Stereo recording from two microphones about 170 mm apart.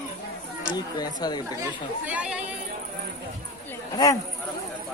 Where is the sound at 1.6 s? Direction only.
10° right (ahead or behind).